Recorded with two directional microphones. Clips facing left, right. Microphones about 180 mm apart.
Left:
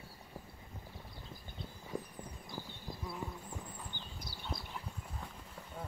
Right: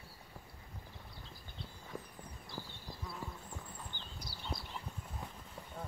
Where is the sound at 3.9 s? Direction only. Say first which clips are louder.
Left 2 dB; 15° left (ahead or behind).